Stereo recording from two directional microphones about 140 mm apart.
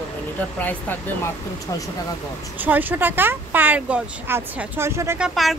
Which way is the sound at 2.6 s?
15° right (ahead or behind).